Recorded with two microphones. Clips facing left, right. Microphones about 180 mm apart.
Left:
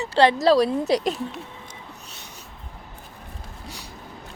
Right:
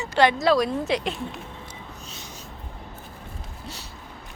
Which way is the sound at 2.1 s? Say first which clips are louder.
Right 3 dB; 60° left (ahead or behind).